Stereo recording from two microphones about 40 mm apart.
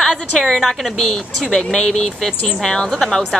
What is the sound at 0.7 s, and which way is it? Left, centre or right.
A woman's voice, centre.